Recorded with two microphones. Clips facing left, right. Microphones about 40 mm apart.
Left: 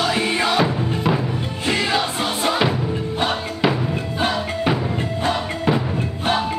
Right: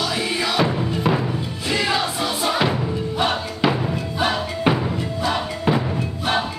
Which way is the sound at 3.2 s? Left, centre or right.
Centre.